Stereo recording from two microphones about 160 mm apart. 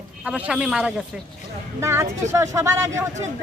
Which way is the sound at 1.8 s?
15° right (ahead or behind).